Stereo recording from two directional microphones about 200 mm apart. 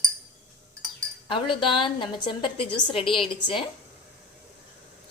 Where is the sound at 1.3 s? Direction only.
25° left (ahead or behind).